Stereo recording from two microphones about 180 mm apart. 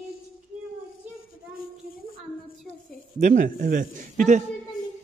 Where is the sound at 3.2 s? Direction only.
45° right (ahead or behind).